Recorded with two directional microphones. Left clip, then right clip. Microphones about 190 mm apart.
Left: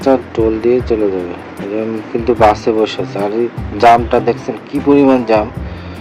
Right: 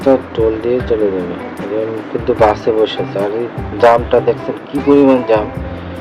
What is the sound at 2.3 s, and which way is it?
Speech, 35° left (ahead or behind).